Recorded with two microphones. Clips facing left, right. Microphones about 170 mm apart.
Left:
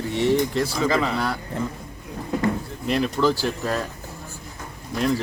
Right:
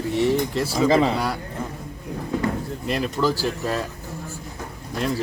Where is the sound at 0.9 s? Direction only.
25° right (ahead or behind).